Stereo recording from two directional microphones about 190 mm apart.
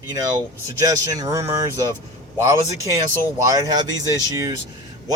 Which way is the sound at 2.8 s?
15° right (ahead or behind).